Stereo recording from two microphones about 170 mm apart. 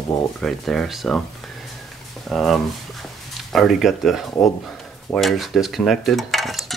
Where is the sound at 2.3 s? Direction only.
Centre (ahead or behind).